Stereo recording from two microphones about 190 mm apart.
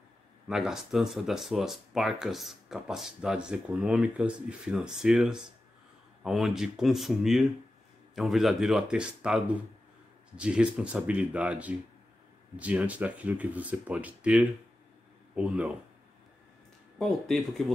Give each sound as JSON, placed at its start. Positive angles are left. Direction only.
{"t": 0.5, "sound": "speech", "side_deg": 0}
{"t": 17.0, "sound": "speech", "side_deg": 0}